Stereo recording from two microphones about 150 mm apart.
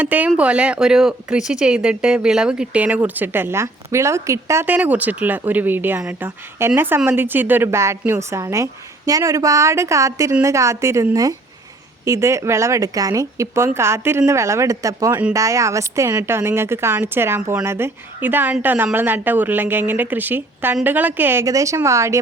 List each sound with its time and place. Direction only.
0.0 s a woman's voice: 10° right (ahead or behind)